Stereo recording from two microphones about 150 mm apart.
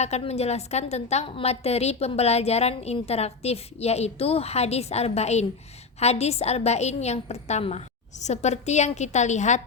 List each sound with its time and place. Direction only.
0.0 s a woman's voice: 45° left (ahead or behind)